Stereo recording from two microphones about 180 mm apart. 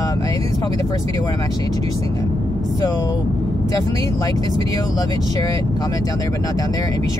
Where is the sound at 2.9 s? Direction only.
20° left (ahead or behind).